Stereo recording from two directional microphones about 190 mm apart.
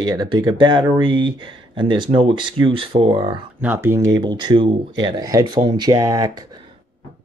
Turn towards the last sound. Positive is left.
turn(degrees=-20)  # may be behind; listen again after turning